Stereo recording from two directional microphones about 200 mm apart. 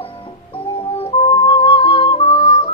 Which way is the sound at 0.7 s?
25° left (ahead or behind).